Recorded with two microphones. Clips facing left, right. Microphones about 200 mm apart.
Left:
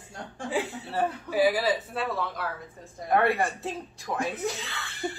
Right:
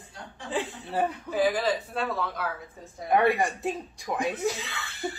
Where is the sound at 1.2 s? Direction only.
10° left (ahead or behind).